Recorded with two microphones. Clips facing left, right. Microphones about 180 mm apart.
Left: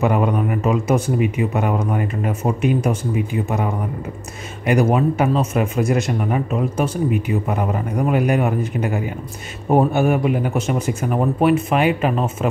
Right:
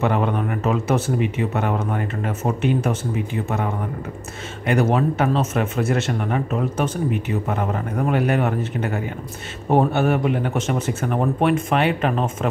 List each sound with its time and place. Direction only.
0.0 s speech: 10° left (ahead or behind)